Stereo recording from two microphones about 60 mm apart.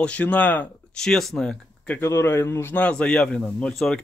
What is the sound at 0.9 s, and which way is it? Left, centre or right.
Speech, centre.